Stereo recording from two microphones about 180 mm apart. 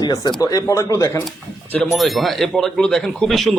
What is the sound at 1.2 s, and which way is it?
A man's voice, 5° left (ahead or behind).